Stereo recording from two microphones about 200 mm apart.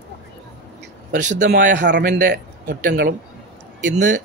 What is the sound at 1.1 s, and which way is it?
Speech, 40° right (ahead or behind).